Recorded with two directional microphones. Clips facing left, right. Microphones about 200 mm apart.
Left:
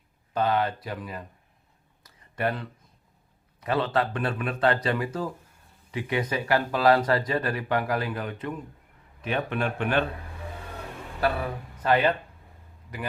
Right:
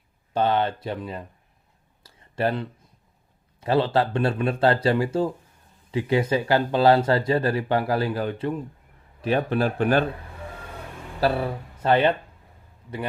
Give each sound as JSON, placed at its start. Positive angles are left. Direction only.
{"t": 0.3, "sound": "speech", "side_deg": -30}
{"t": 2.0, "sound": "clicking", "side_deg": -30}
{"t": 3.6, "sound": "speech", "side_deg": -30}
{"t": 11.2, "sound": "speech", "side_deg": -30}